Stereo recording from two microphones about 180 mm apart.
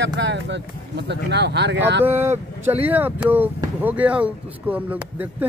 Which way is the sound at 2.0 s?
10° right (ahead or behind).